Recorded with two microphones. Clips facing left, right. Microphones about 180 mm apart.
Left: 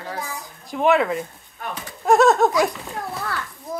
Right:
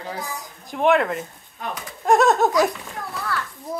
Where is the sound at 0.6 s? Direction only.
Centre (ahead or behind).